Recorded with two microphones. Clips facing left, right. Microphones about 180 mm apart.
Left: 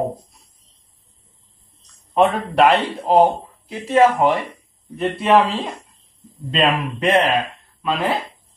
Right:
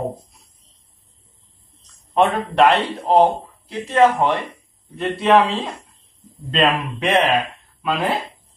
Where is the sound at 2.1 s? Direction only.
Centre (ahead or behind).